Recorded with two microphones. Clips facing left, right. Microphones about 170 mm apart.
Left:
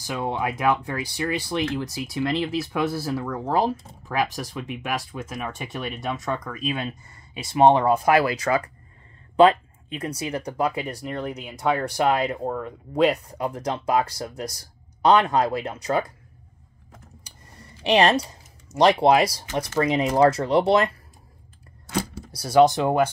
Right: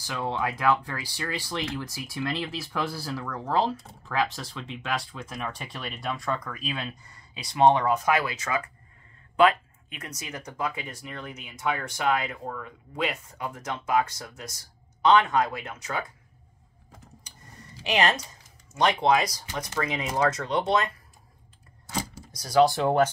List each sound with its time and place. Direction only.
0.0 s speech: 20° left (ahead or behind)
3.5 s speech: 15° left (ahead or behind); by 16.1 s 35° left (ahead or behind)
17.8 s speech: 30° left (ahead or behind)
22.3 s speech: 25° left (ahead or behind)
22.8 s speech: 10° left (ahead or behind)